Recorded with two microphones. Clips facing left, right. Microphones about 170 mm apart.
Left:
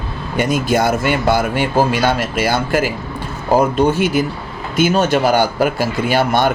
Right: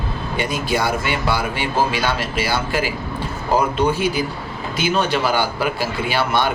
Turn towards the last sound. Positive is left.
turn(degrees=45)  # may be behind; listen again after turning